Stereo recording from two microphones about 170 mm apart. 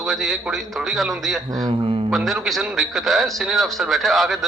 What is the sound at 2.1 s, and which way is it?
A man's voice, centre (ahead or behind).